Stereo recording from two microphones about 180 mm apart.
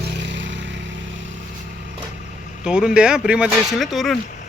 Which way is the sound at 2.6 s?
5° right (ahead or behind).